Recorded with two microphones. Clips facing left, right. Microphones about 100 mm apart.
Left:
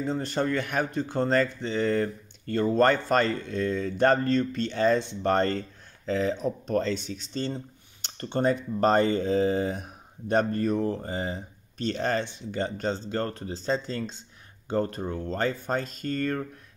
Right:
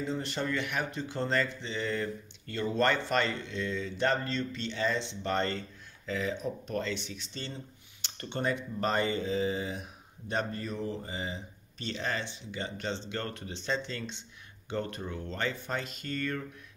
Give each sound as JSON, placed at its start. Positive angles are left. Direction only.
{"t": 0.0, "sound": "speech", "side_deg": 45}